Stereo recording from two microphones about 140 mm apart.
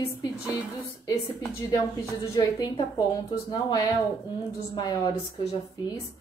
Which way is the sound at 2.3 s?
30° left (ahead or behind).